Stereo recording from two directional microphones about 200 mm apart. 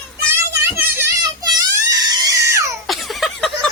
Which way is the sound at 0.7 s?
15° right (ahead or behind).